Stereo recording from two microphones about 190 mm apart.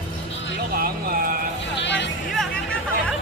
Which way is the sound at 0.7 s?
50° right (ahead or behind).